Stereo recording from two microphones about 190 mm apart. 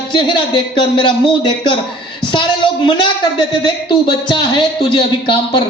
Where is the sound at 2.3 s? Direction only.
25° left (ahead or behind).